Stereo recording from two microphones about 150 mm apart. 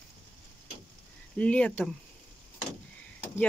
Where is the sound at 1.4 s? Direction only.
10° left (ahead or behind).